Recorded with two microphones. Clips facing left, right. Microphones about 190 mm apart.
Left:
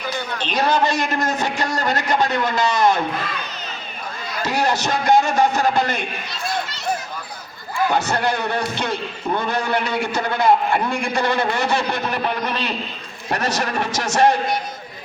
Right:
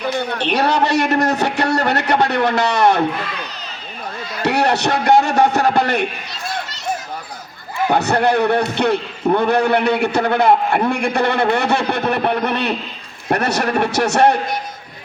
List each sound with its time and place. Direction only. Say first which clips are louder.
0.0 s a man's voice: right 6 dB; 60° right (ahead or behind)
4.4 s a man's voice: right 4 dB; 65° right (ahead or behind)
7.9 s a man's voice: right 6 dB; 60° right (ahead or behind)